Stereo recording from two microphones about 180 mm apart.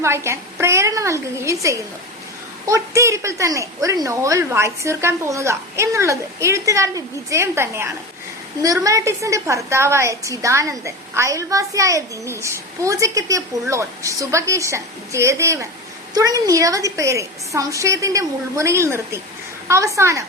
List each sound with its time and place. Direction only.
0.0 s a woman's voice: 15° right (ahead or behind)